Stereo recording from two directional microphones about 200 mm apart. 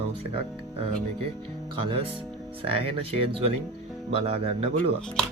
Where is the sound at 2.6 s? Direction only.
30° right (ahead or behind).